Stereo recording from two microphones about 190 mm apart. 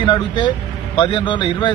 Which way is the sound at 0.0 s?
25° left (ahead or behind).